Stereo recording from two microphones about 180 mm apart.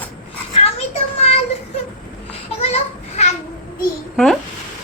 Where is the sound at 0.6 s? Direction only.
35° left (ahead or behind).